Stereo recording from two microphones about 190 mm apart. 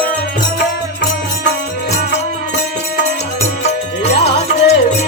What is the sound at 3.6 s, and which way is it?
Music, 35° left (ahead or behind).